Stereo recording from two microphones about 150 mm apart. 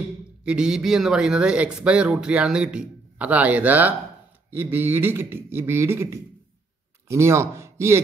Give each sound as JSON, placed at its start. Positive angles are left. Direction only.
{"t": 0.5, "sound": "speech", "side_deg": -5}